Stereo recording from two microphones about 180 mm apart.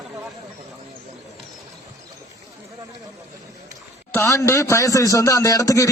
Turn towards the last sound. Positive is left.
turn(degrees=20)  # may be behind; listen again after turning